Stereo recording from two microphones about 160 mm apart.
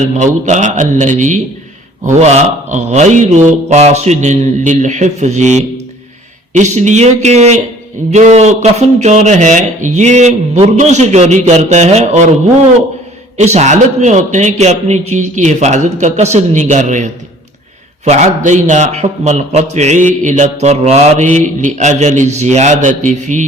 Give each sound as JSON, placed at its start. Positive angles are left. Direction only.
{"t": 0.4, "sound": "a man's voice", "side_deg": -50}
{"t": 13.4, "sound": "a man's voice", "side_deg": -45}